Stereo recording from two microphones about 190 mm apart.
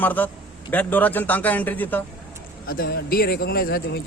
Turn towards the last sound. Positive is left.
turn(degrees=50)  # may be behind; listen again after turning